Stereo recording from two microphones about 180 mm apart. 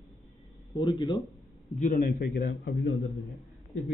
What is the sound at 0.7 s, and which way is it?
Speech, 25° left (ahead or behind).